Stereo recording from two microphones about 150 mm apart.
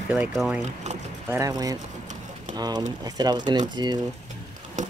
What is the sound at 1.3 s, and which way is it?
Speech, 20° right (ahead or behind).